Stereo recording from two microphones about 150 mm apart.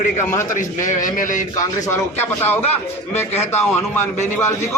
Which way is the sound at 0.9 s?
60° left (ahead or behind).